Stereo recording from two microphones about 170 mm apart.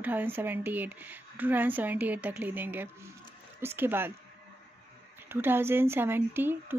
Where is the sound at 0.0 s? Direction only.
10° right (ahead or behind).